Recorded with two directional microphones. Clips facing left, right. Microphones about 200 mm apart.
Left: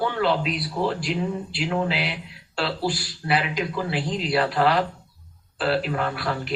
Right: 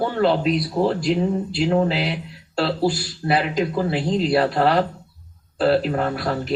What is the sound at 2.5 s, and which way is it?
A man's voice, 40° right (ahead or behind).